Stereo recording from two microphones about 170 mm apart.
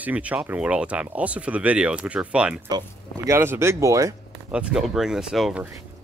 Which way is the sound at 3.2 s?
15° right (ahead or behind).